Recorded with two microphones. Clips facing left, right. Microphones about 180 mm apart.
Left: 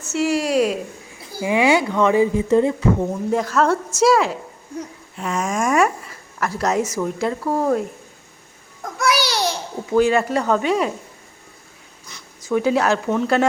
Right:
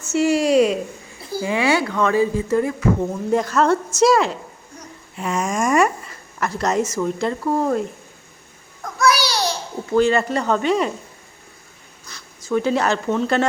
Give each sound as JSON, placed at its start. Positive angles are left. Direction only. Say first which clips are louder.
{"t": 0.1, "sound": "a sound", "louder": "right 3 dB", "side_deg": 0}
{"t": 1.4, "sound": "speech", "louder": "left 2 dB", "side_deg": 15}
{"t": 3.3, "sound": "speech", "louder": "right 2 dB", "side_deg": 0}
{"t": 8.8, "sound": "a sound", "louder": "right 2 dB", "side_deg": 20}
{"t": 9.9, "sound": "speech", "louder": "left 1 dB", "side_deg": 10}
{"t": 12.0, "sound": "speech", "louder": "left 1 dB", "side_deg": 15}